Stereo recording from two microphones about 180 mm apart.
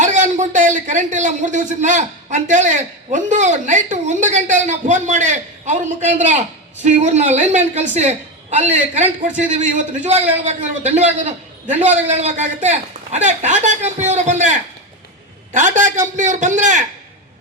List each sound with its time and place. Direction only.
0.0 s a man's voice: 45° right (ahead or behind)